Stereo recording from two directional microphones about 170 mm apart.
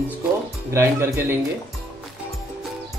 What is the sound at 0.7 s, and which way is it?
Speech, 15° right (ahead or behind).